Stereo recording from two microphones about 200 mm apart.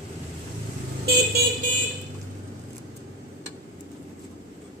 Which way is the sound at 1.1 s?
50° right (ahead or behind).